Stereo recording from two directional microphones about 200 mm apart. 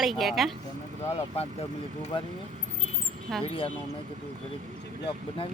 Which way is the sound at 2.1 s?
25° left (ahead or behind).